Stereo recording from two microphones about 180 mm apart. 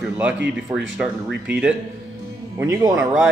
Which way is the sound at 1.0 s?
5° right (ahead or behind).